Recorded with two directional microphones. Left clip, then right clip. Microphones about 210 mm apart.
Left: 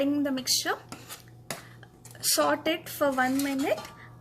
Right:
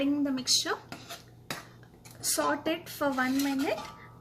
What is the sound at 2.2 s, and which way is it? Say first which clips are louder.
A woman's voice: left 4 dB; 30° left (ahead or behind).